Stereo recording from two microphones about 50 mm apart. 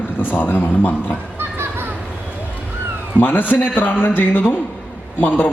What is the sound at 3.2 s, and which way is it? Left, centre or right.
Speech, left.